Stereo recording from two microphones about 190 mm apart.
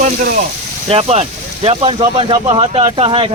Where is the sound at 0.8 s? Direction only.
35° right (ahead or behind).